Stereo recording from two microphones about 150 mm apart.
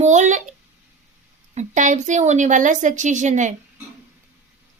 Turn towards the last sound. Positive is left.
turn(degrees=-55)  # may be behind; listen again after turning